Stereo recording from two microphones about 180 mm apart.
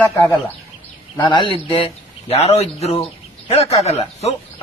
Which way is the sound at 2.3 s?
35° left (ahead or behind).